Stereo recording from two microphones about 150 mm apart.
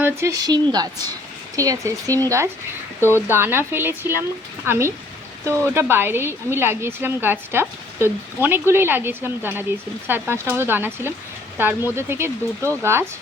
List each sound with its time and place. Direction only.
0.0 s speech: 20° right (ahead or behind)
3.0 s speech: 15° left (ahead or behind)
3.2 s speech: 15° right (ahead or behind)